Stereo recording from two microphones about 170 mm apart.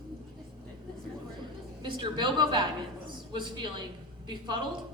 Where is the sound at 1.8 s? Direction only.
25° right (ahead or behind).